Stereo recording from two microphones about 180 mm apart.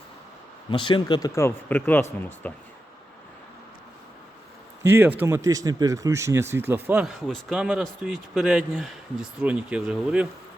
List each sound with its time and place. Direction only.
0.7 s speech: 30° left (ahead or behind); by 2.6 s 10° left (ahead or behind)
4.8 s speech: 10° right (ahead or behind)